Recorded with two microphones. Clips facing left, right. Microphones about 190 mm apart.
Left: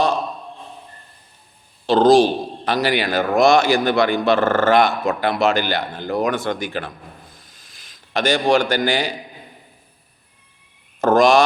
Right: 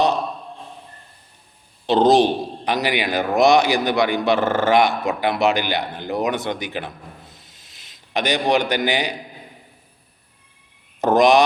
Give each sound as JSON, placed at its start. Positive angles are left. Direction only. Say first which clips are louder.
{"t": 1.9, "sound": "a man's voice", "louder": "left 2 dB", "side_deg": -20}
{"t": 11.0, "sound": "a man's voice", "louder": "left 1 dB", "side_deg": -20}